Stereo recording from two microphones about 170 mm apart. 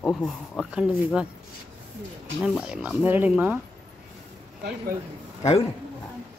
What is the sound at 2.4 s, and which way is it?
Speech, 5° right (ahead or behind).